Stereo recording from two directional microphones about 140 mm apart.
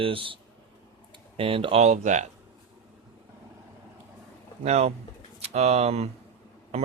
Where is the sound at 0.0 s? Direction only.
40° right (ahead or behind).